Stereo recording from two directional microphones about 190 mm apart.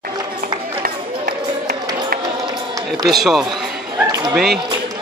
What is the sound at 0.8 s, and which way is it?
Run, 50° right (ahead or behind).